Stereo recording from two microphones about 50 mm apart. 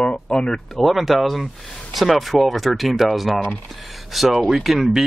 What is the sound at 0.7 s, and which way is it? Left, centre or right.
Speech, centre.